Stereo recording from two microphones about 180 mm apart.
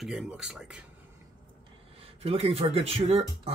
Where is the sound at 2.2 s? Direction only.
35° right (ahead or behind).